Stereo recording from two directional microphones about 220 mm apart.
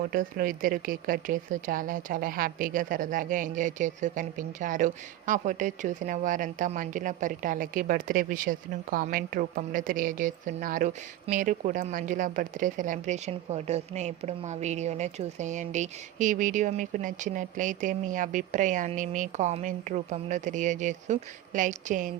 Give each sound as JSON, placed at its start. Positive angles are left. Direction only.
{"t": 0.1, "sound": "a woman's voice", "side_deg": -40}